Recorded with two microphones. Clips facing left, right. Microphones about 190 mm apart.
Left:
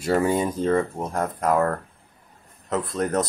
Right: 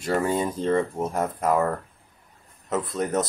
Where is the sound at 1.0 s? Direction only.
5° right (ahead or behind).